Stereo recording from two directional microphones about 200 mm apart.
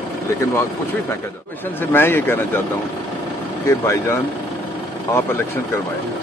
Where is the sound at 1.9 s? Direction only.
10° left (ahead or behind).